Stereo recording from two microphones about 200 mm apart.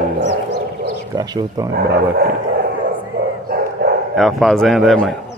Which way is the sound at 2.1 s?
50° right (ahead or behind).